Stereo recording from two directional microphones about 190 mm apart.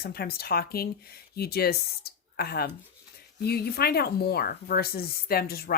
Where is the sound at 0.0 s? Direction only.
55° left (ahead or behind).